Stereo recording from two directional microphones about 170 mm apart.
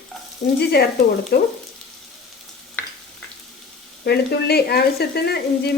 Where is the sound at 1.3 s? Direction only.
75° left (ahead or behind).